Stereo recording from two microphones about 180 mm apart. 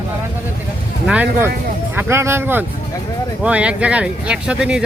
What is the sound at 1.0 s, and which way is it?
Speech, 10° right (ahead or behind).